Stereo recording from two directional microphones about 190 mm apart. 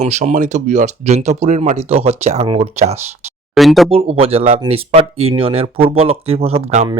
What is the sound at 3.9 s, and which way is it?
Speech, 30° right (ahead or behind).